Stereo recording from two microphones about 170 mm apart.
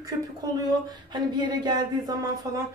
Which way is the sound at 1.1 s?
25° right (ahead or behind).